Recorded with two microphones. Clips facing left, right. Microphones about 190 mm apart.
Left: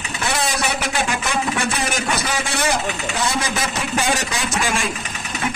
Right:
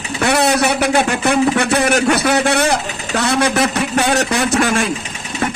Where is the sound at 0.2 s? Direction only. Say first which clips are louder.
Right 9 dB; 65° right (ahead or behind).